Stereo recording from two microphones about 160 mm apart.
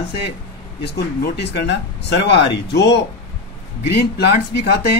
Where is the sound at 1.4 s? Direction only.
90° left.